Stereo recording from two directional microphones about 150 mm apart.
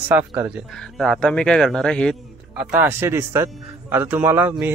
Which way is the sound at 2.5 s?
10° right (ahead or behind).